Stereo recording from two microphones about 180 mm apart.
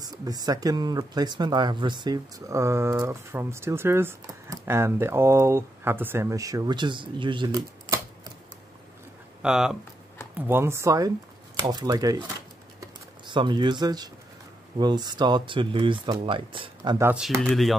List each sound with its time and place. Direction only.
0.0 s speech: 20° right (ahead or behind)
9.4 s speech: 5° right (ahead or behind); by 12.2 s 20° right (ahead or behind)
12.8 s typing: 25° right (ahead or behind)
14.8 s speech: 25° right (ahead or behind)
17.0 s speech: 10° right (ahead or behind)
17.4 s speech: centre (ahead or behind)